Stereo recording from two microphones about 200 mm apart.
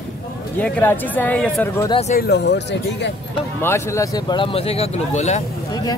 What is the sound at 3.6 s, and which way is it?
Speech, 15° left (ahead or behind).